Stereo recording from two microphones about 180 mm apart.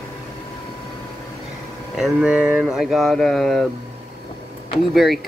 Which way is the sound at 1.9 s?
5° right (ahead or behind).